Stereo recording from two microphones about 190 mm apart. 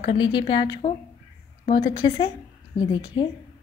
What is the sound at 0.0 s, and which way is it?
A woman's voice, 25° left (ahead or behind).